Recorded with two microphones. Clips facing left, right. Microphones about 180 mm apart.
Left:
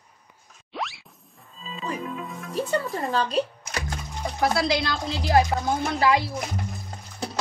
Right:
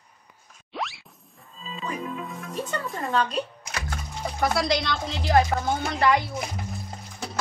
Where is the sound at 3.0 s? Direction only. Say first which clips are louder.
Left 1 dB; 35° left (ahead or behind).